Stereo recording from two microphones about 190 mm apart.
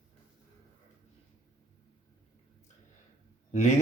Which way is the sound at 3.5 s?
40° left (ahead or behind).